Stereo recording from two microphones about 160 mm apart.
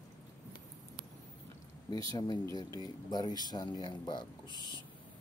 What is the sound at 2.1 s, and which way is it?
Speech, 25° left (ahead or behind).